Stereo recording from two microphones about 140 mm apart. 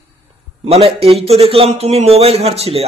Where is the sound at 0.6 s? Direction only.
45° right (ahead or behind).